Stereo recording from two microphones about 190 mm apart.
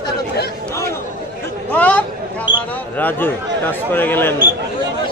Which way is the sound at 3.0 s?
10° left (ahead or behind).